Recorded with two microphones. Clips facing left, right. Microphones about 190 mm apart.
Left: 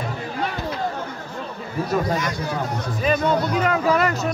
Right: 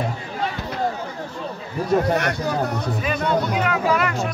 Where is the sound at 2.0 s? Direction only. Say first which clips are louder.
Right 3 dB; 65° right (ahead or behind).